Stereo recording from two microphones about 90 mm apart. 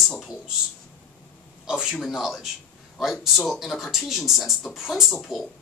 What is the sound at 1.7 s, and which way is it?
Speech, 5° right (ahead or behind).